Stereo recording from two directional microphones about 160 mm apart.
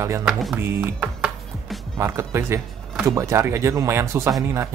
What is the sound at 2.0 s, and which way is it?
Speech, 15° right (ahead or behind).